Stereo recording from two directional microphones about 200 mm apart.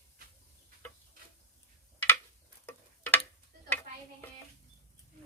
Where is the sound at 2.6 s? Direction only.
10° left (ahead or behind).